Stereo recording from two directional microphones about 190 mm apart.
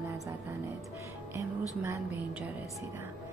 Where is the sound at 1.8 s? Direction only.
10° right (ahead or behind).